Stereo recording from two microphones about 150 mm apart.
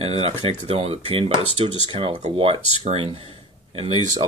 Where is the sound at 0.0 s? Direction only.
45° right (ahead or behind).